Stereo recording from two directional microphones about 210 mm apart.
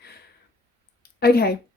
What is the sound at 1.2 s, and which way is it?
Speech, 50° left (ahead or behind).